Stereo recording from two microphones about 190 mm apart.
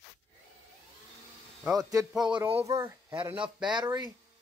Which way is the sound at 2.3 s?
25° right (ahead or behind).